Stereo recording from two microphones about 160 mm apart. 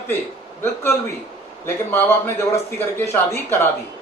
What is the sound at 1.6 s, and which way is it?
A man's voice, 15° left (ahead or behind).